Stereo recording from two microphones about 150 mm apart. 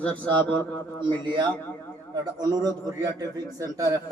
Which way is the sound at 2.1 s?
25° right (ahead or behind).